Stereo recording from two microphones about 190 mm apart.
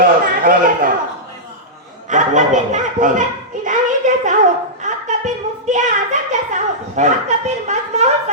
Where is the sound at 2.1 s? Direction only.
40° right (ahead or behind).